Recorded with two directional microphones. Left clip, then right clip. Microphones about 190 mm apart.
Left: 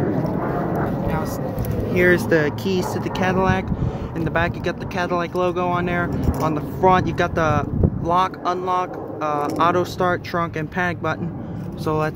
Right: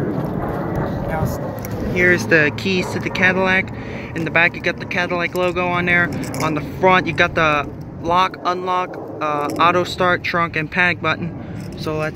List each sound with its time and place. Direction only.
2.0 s speech: 10° left (ahead or behind)
11.8 s speech: 15° left (ahead or behind)